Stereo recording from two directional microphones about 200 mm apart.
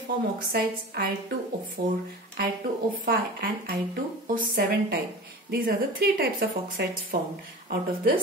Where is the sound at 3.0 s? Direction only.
50° right (ahead or behind).